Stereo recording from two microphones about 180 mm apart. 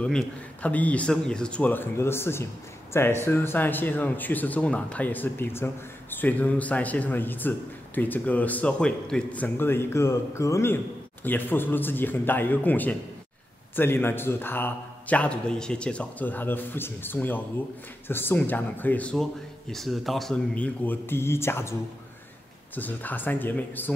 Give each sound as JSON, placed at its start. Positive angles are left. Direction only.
{"t": 0.0, "sound": "speech", "side_deg": 5}
{"t": 22.8, "sound": "speech", "side_deg": 10}